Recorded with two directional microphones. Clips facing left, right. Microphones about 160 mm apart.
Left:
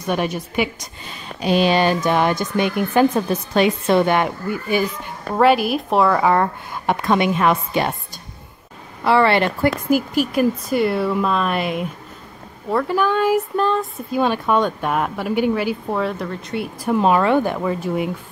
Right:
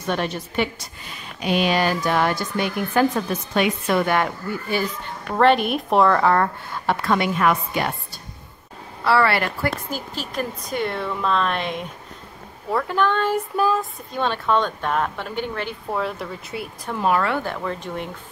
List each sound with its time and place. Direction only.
0.0 s a woman's voice: 10° left (ahead or behind)
1.4 s a woman's voice: 30° left (ahead or behind)
9.8 s a woman's voice: 10° left (ahead or behind)
13.6 s a sound: 5° right (ahead or behind)
14.1 s a woman's voice: 10° left (ahead or behind)
16.9 s a woman's voice: 20° left (ahead or behind)